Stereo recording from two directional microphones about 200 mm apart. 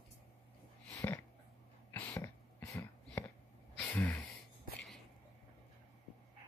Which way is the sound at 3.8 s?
5° left (ahead or behind).